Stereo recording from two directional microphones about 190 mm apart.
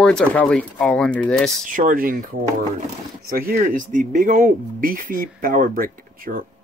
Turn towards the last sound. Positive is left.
turn(degrees=-50)  # may be behind; listen again after turning